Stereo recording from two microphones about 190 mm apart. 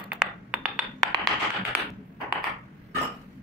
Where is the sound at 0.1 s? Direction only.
5° right (ahead or behind).